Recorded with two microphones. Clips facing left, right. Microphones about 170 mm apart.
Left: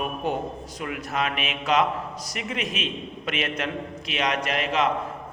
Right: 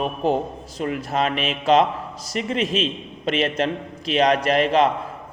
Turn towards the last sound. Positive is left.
turn(degrees=-35)  # may be behind; listen again after turning